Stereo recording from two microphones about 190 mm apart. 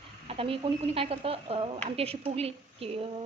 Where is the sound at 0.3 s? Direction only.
30° right (ahead or behind).